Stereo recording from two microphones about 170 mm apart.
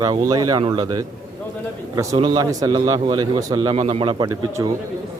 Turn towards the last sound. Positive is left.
turn(degrees=-25)  # may be behind; listen again after turning